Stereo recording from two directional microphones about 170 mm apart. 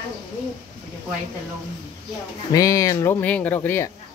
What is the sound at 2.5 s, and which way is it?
Speech, 20° left (ahead or behind).